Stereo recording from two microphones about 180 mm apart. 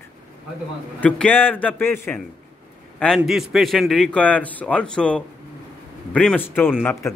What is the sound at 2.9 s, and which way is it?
A man's voice, centre (ahead or behind).